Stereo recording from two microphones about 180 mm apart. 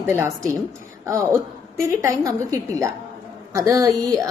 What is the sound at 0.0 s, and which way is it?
A woman's voice, 15° right (ahead or behind).